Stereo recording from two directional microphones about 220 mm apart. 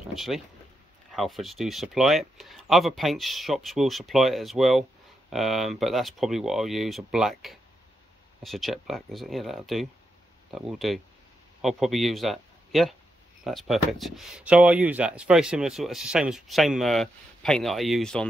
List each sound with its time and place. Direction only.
0.1 s speech: centre (ahead or behind)